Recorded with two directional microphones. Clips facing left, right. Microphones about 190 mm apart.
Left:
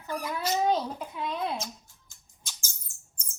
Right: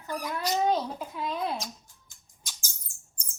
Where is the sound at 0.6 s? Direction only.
Centre (ahead or behind).